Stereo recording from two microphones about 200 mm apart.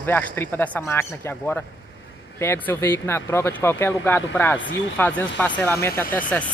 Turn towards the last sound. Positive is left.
turn(degrees=10)  # may be behind; listen again after turning